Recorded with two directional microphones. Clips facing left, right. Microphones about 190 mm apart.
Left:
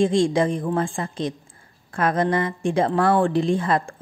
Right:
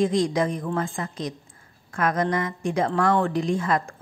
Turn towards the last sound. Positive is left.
turn(degrees=30)  # may be behind; listen again after turning